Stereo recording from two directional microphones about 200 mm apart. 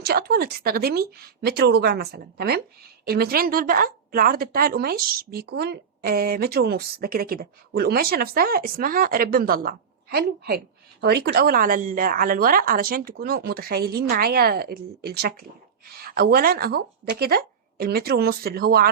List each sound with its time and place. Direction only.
0.0 s speech: 50° right (ahead or behind)